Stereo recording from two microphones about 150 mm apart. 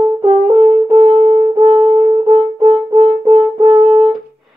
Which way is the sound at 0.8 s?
30° right (ahead or behind).